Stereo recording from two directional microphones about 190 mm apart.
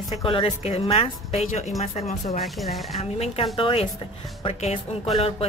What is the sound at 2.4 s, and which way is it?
Speech, centre (ahead or behind).